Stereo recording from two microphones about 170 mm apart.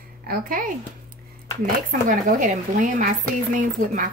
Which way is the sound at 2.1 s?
50° right (ahead or behind).